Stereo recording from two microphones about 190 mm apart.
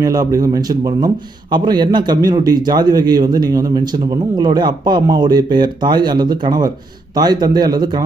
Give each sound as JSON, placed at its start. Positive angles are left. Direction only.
{"t": 0.0, "sound": "speech", "side_deg": -20}